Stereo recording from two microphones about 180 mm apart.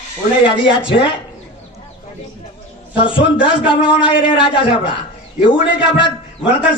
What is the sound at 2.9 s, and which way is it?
A man's voice, 30° left (ahead or behind).